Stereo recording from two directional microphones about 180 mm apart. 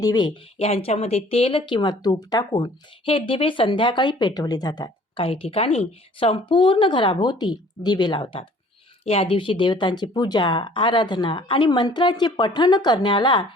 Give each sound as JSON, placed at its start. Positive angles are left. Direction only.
{"t": 0.0, "sound": "speech", "side_deg": 20}
{"t": 0.5, "sound": "speech", "side_deg": 35}